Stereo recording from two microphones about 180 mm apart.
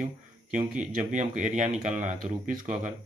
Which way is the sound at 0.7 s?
45° right (ahead or behind).